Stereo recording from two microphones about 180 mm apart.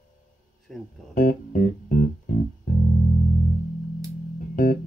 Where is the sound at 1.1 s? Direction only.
45° left (ahead or behind).